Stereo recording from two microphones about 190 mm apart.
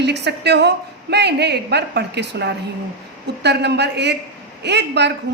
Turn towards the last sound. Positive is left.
turn(degrees=-65)  # may be behind; listen again after turning